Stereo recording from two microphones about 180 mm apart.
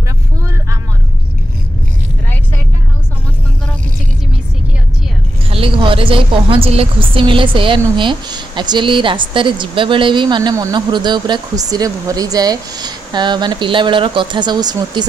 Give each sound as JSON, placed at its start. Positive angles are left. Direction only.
{"t": 5.5, "sound": "a woman's voice", "side_deg": -30}